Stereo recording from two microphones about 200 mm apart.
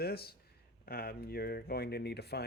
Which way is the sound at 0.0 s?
50° left (ahead or behind).